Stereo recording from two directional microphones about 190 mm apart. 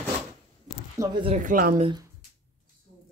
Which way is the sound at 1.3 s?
45° right (ahead or behind).